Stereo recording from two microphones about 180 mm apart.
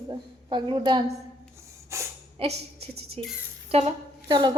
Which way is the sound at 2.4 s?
30° right (ahead or behind).